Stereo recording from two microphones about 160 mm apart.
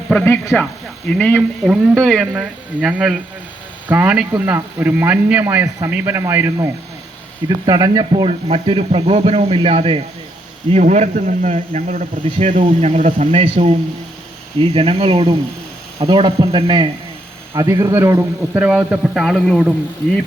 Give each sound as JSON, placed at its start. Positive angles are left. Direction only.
{"t": 0.1, "sound": "a man's voice", "side_deg": 10}
{"t": 8.1, "sound": "speech", "side_deg": -35}
{"t": 10.7, "sound": "speech", "side_deg": -45}
{"t": 12.6, "sound": "a man's voice", "side_deg": -45}